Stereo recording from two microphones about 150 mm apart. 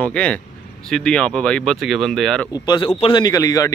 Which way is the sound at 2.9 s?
40° left (ahead or behind).